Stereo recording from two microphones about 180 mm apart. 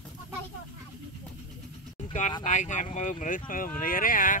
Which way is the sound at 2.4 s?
45° left (ahead or behind).